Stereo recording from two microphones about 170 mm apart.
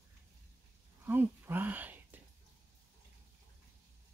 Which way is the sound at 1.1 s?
10° right (ahead or behind).